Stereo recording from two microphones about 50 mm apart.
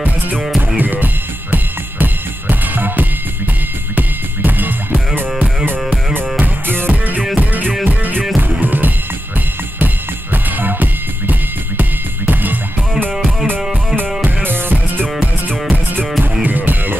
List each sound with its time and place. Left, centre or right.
0.7 s music: right
6.3 s music: right
10.3 s music: right
13.9 s music: right
16.4 s music: right